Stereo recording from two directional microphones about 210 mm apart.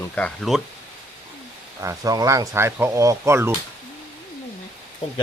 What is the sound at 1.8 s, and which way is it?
Speech, 15° right (ahead or behind).